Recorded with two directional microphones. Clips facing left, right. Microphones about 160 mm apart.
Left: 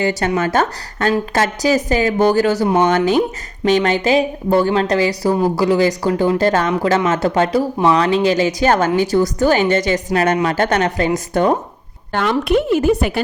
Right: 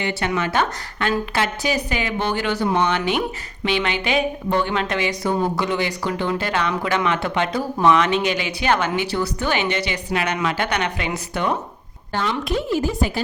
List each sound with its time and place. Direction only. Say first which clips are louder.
0.0 s a woman's voice: left 6 dB; 40° left (ahead or behind)
12.1 s speech: left 7 dB; 60° left (ahead or behind)